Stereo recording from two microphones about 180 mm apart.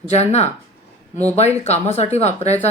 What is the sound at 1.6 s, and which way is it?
Speech, 35° left (ahead or behind).